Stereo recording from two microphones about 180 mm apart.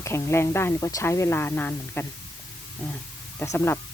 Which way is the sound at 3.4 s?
15° left (ahead or behind).